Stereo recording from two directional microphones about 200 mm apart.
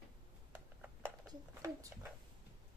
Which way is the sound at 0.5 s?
5° right (ahead or behind).